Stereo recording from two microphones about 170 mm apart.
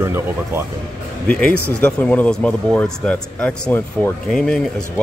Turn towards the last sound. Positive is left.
turn(degrees=5)  # may be behind; listen again after turning